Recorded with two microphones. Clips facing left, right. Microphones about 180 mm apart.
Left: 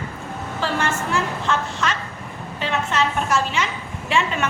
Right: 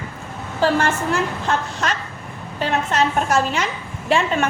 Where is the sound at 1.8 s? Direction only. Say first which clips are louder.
Right 1 dB; 40° right (ahead or behind).